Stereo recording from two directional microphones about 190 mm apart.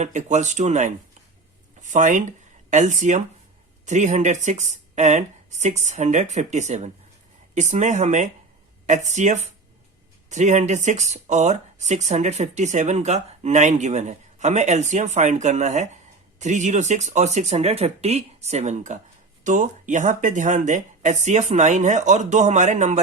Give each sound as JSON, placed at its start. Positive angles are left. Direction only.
{"t": 0.0, "sound": "speech", "side_deg": -40}